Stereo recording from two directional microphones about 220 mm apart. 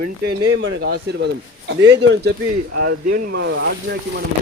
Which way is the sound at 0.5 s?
55° right (ahead or behind).